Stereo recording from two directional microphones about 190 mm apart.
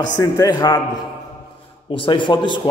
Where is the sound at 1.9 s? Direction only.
25° left (ahead or behind).